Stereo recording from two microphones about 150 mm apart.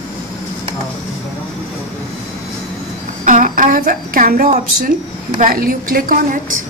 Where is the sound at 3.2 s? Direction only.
60° right (ahead or behind).